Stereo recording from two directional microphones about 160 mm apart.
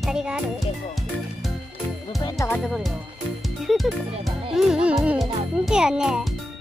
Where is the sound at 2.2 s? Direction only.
25° left (ahead or behind).